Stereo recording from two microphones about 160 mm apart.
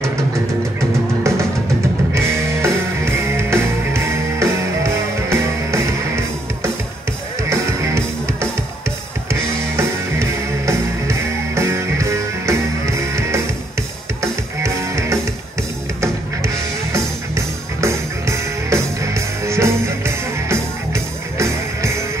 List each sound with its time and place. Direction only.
2.1 s music: 15° right (ahead or behind)
17.7 s music: 20° right (ahead or behind)